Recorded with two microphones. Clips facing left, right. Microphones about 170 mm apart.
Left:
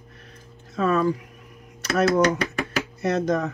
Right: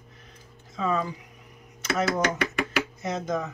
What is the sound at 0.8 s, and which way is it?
Speech, 70° left (ahead or behind).